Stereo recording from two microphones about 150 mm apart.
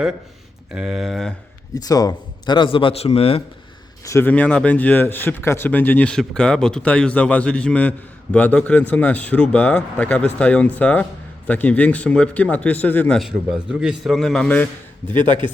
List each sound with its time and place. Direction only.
0.7 s a man's voice: 5° right (ahead or behind)
1.7 s a man's voice: 25° left (ahead or behind); by 3.4 s 40° left (ahead or behind)
4.0 s speech: 15° left (ahead or behind)
13.1 s a man's voice: centre (ahead or behind)